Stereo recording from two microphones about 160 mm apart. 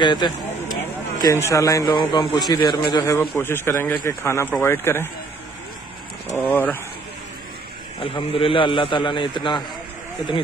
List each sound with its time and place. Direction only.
0.0 s speech: 30° left (ahead or behind)
1.2 s speech: 20° left (ahead or behind)
3.2 s speech: 15° left (ahead or behind)
6.5 s speech: 10° left (ahead or behind)
8.0 s a man's voice: 35° left (ahead or behind)